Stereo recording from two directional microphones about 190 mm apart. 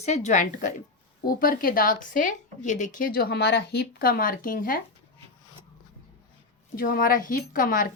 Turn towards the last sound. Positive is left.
turn(degrees=45)  # may be behind; listen again after turning